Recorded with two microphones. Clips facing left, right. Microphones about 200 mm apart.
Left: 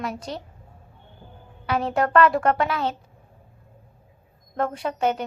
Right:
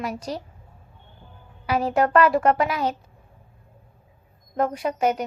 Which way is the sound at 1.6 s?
10° right (ahead or behind).